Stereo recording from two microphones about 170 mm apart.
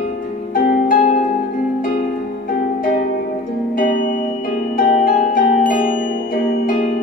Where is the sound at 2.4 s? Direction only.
55° left (ahead or behind).